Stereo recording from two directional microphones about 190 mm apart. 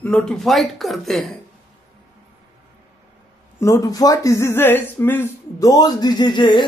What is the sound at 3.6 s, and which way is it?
Speech, 15° left (ahead or behind).